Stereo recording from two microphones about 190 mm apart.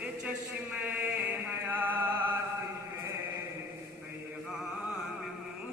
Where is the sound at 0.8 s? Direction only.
10° right (ahead or behind).